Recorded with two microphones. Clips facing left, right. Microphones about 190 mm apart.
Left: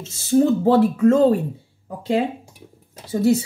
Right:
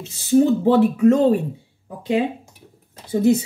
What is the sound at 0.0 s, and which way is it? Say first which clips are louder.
Speech: right 1 dB; 15° right (ahead or behind).